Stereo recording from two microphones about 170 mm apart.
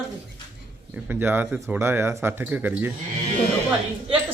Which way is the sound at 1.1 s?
10° right (ahead or behind).